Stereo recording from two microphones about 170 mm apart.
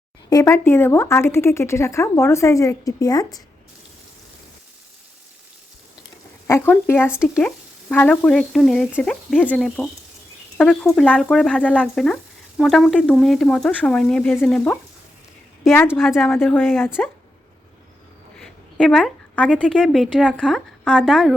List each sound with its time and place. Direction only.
0.3 s speech: 20° left (ahead or behind)
6.5 s speech: 15° left (ahead or behind)
10.9 s speech: 5° left (ahead or behind)
15.9 s speech: centre (ahead or behind)
16.4 s speech: 10° left (ahead or behind)
18.3 s a woman's voice: 5° left (ahead or behind)